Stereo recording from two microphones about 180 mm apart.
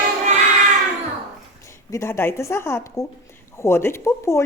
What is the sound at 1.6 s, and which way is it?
A woman's voice, 15° left (ahead or behind).